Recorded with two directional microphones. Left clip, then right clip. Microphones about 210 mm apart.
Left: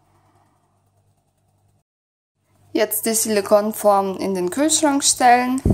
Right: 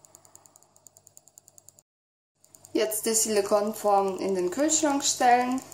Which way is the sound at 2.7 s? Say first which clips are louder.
Left 6 dB; 30° left (ahead or behind).